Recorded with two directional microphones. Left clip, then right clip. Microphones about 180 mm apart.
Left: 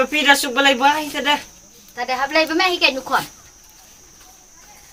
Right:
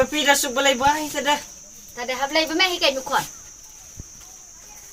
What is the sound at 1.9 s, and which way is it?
Speech, 20° right (ahead or behind).